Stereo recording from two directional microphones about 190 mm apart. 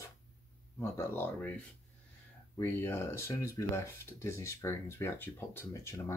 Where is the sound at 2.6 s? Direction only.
10° left (ahead or behind).